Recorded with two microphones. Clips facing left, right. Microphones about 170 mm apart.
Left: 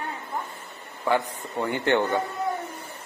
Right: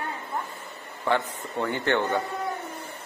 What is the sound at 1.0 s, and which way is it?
Speech, 15° left (ahead or behind).